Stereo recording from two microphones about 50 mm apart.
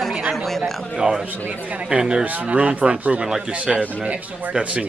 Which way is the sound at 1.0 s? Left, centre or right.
Centre.